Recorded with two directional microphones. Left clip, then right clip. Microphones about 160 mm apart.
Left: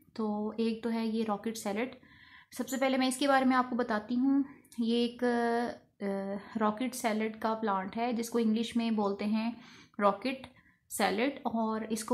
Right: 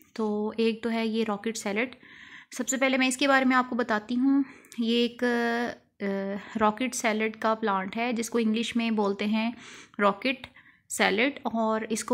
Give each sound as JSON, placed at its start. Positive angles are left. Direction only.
{"t": 0.1, "sound": "a woman's voice", "side_deg": -25}